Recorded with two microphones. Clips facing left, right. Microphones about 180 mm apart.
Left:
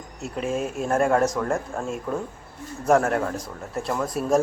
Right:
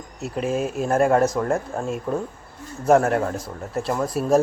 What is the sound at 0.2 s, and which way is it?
Speech, centre (ahead or behind).